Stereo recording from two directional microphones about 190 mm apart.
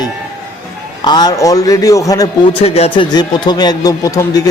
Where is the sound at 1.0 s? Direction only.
20° left (ahead or behind).